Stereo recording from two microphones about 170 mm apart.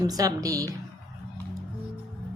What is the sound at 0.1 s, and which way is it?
Speech, 20° right (ahead or behind).